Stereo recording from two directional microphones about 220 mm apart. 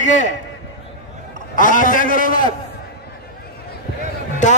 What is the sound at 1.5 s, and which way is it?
Speech, 35° left (ahead or behind).